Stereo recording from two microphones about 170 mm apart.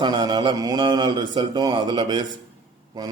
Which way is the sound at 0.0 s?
25° right (ahead or behind).